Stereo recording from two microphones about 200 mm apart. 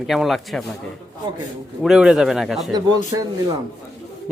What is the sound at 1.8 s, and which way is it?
Speech, centre (ahead or behind).